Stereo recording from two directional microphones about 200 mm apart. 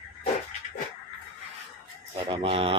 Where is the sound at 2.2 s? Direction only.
30° right (ahead or behind).